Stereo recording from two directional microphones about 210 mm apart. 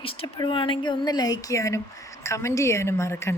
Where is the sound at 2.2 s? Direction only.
15° left (ahead or behind).